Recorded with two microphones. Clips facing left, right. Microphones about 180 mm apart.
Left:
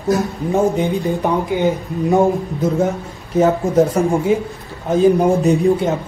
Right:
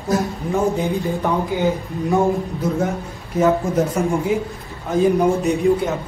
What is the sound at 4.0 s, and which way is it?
Speech, 35° left (ahead or behind).